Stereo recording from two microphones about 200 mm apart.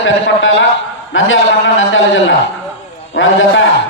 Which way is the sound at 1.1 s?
70° left (ahead or behind).